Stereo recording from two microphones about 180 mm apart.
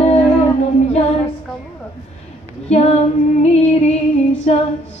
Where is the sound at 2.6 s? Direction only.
35° left (ahead or behind).